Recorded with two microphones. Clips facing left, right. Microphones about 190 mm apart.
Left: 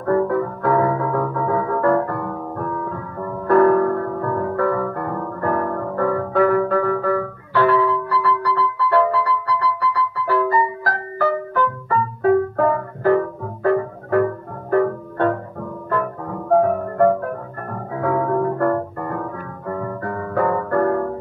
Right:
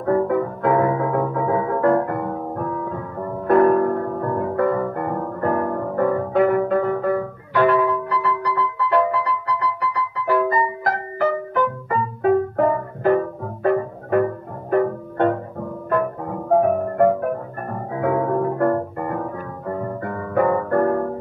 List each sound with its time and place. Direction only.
0.0 s music: 20° right (ahead or behind)
18.6 s music: 20° right (ahead or behind)